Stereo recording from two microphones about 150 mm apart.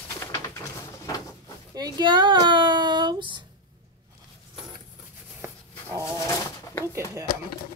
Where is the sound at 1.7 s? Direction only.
25° right (ahead or behind).